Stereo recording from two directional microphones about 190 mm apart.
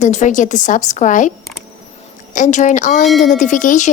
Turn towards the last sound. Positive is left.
turn(degrees=40)  # may be behind; listen again after turning